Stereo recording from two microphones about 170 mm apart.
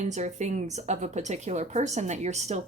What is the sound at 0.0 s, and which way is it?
Speech, 45° right (ahead or behind).